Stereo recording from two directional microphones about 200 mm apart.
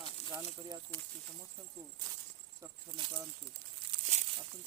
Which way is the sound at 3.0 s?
25° right (ahead or behind).